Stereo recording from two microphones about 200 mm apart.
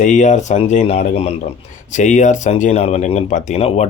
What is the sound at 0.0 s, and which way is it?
Speech, 40° left (ahead or behind).